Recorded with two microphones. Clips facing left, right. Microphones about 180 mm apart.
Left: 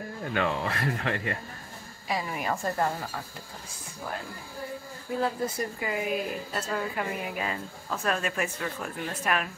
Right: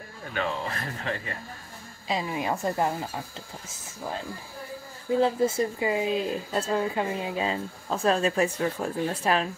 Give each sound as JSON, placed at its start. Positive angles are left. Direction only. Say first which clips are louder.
{"t": 0.7, "sound": "speech", "louder": "left 3 dB", "side_deg": 65}
{"t": 2.0, "sound": "speech", "louder": "right 2 dB", "side_deg": -20}
{"t": 5.1, "sound": "speech", "louder": "right 6 dB", "side_deg": -25}